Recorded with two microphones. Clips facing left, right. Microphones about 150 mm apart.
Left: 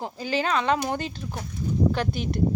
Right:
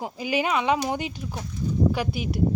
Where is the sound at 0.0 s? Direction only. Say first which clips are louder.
Right 1 dB; 15° right (ahead or behind).